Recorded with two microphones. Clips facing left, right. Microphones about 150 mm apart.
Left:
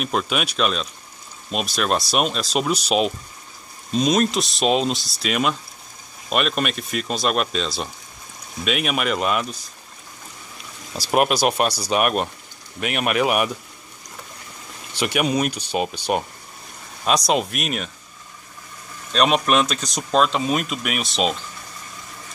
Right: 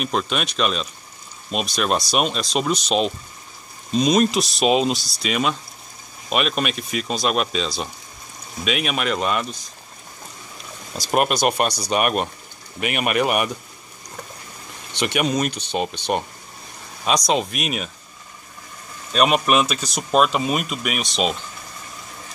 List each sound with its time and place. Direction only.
0.0 s speech: 5° left (ahead or behind)
11.0 s speech: centre (ahead or behind)
15.0 s speech: 5° left (ahead or behind)
17.3 s speech: centre (ahead or behind)
19.1 s speech: 5° right (ahead or behind)